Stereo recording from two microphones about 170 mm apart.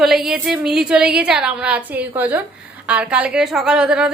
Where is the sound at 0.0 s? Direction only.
Centre (ahead or behind).